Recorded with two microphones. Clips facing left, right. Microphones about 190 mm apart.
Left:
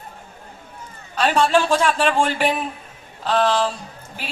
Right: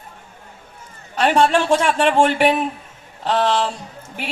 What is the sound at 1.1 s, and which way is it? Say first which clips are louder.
A woman's voice: right 2 dB; 20° right (ahead or behind).